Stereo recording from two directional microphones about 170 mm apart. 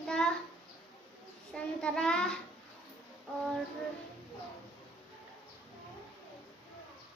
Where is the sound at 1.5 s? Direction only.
5° left (ahead or behind).